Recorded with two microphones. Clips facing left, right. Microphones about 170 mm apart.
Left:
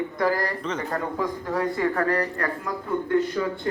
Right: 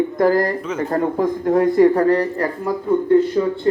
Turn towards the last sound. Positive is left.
turn(degrees=-30)  # may be behind; listen again after turning